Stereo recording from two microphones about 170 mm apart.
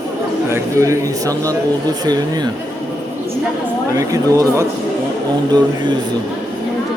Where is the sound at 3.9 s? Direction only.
20° right (ahead or behind).